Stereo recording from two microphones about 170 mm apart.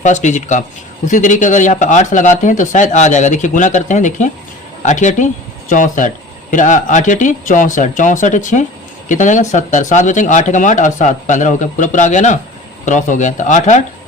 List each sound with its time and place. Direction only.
0.0 s speech: 45° left (ahead or behind)